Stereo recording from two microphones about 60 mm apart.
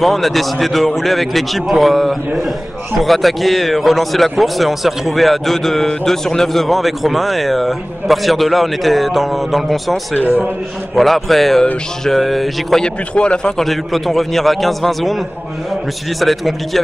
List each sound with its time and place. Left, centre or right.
0.0 s a man's voice: centre
10.2 s a man's voice: right
11.0 s a man's voice: centre
12.8 s a man's voice: centre
16.2 s a man's voice: centre